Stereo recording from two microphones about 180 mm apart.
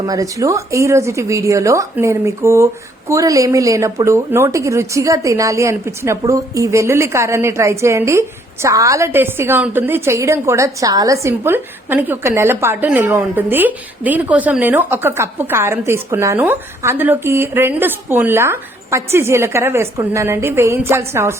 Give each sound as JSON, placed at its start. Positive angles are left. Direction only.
{"t": 0.0, "sound": "a woman's voice", "side_deg": -20}